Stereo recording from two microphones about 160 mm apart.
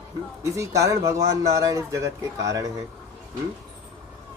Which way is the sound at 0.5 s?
20° right (ahead or behind).